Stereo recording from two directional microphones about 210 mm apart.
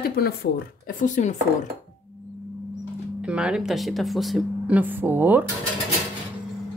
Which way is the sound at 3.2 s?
5° right (ahead or behind).